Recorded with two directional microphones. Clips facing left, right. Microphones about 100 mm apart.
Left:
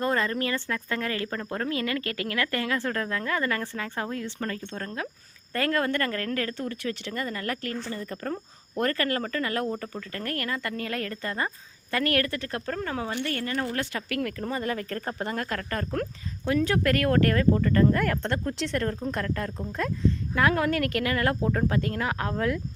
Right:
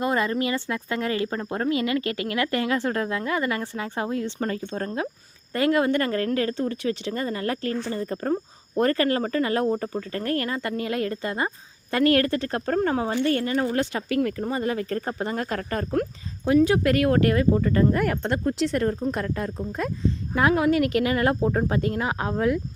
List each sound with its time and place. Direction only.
0.0 s speech: 15° right (ahead or behind)